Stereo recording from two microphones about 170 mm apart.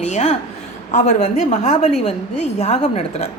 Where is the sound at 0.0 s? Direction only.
45° left (ahead or behind).